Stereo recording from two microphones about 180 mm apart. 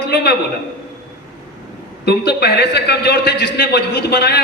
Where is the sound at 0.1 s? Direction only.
65° left (ahead or behind).